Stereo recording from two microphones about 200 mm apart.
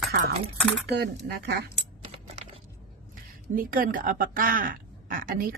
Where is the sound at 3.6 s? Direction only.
45° right (ahead or behind).